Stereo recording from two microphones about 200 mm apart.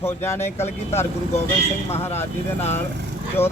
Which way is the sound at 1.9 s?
10° left (ahead or behind).